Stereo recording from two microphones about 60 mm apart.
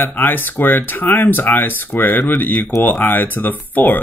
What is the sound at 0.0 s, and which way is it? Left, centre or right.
Speech, left.